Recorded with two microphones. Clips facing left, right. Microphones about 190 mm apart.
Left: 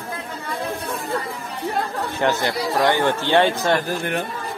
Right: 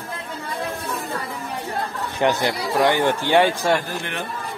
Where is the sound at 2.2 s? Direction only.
15° right (ahead or behind).